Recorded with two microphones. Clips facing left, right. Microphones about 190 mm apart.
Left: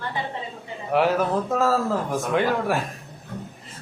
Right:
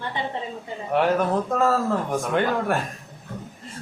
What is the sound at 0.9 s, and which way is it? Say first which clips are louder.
A man's voice: even; centre (ahead or behind).